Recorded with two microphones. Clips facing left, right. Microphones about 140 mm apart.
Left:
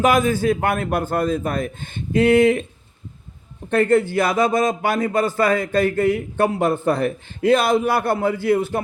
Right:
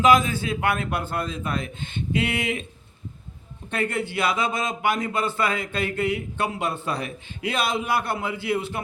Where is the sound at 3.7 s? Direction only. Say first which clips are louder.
Left 10 dB; 50° left (ahead or behind).